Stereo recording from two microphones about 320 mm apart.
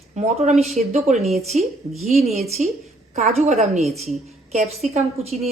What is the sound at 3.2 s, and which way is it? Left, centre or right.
Speech, right.